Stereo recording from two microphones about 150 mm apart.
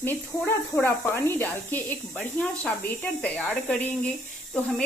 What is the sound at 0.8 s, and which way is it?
A woman's voice, 15° left (ahead or behind).